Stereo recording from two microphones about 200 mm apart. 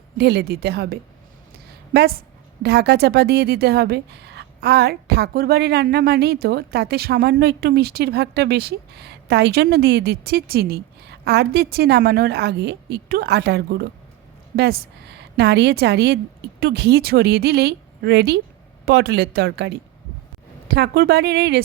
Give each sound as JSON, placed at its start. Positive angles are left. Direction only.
{"t": 0.2, "sound": "a woman's voice", "side_deg": -55}
{"t": 1.5, "sound": "a sound", "side_deg": -50}
{"t": 2.6, "sound": "a woman's voice", "side_deg": -55}